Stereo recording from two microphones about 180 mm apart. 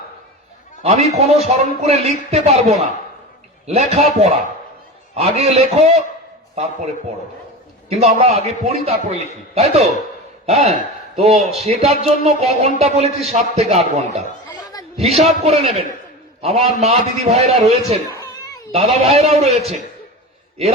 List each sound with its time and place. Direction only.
0.8 s a man's voice: 35° right (ahead or behind)
7.9 s a man's voice: 35° right (ahead or behind)
14.4 s chuckle: 20° left (ahead or behind)
14.9 s a man's voice: 35° right (ahead or behind)
18.1 s a sound: 20° left (ahead or behind)
18.7 s a man's voice: 35° right (ahead or behind)